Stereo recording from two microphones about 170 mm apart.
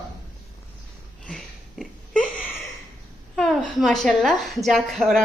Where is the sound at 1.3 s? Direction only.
5° left (ahead or behind).